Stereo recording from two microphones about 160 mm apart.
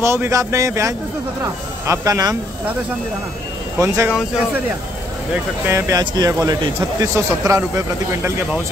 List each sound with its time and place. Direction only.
0.0 s speech: 15° right (ahead or behind)
3.8 s speech: 15° right (ahead or behind)
5.7 s speech: 15° right (ahead or behind)